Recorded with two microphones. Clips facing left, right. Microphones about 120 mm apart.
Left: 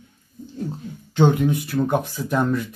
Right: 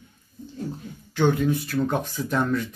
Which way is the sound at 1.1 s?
20° left (ahead or behind).